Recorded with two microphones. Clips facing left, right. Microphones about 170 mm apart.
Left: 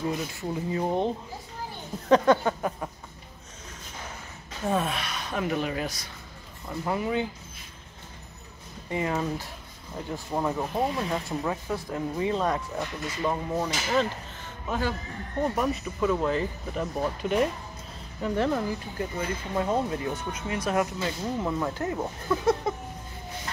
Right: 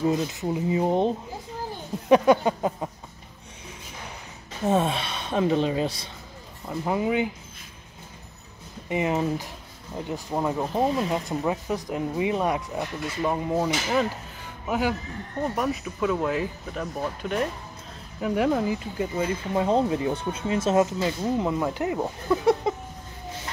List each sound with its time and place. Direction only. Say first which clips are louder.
0.0 s speech: right 6 dB; 20° right (ahead or behind)
4.6 s speech: right 4 dB; 25° right (ahead or behind)
8.8 s speech: right 4 dB; 20° right (ahead or behind)
14.7 s speech: right 4 dB; 10° right (ahead or behind)
15.4 s speech: even; centre (ahead or behind)
18.2 s speech: right 3 dB; 10° right (ahead or behind)